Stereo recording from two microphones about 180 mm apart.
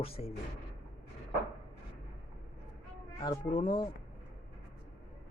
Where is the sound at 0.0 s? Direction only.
35° left (ahead or behind).